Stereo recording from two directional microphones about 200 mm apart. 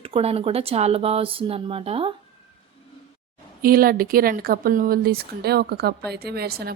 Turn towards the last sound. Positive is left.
turn(degrees=-50)  # may be behind; listen again after turning